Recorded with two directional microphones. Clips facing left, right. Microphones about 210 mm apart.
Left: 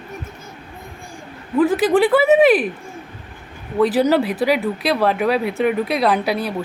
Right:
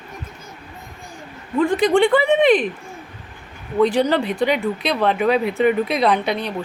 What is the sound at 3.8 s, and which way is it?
Speech, 5° left (ahead or behind).